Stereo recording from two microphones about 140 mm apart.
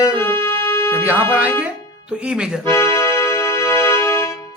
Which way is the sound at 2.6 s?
20° left (ahead or behind).